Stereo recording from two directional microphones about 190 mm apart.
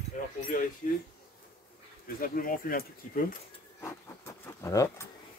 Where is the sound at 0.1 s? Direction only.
40° left (ahead or behind).